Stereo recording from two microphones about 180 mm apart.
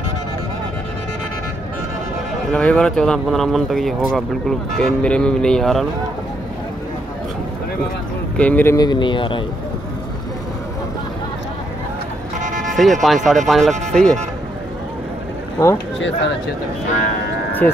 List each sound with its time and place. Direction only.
2.5 s speech: 5° left (ahead or behind)
8.4 s speech: 10° left (ahead or behind)
8.7 s speech: 25° left (ahead or behind)
12.4 s vehicle: 45° right (ahead or behind)
12.7 s speech: centre (ahead or behind)
15.6 s speech: 15° left (ahead or behind)